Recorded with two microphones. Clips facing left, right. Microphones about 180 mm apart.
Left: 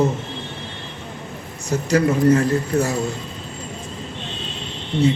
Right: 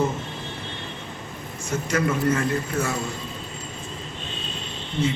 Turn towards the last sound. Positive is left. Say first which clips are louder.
# left 6 dB
turn(degrees=65)  # may be behind; listen again after turning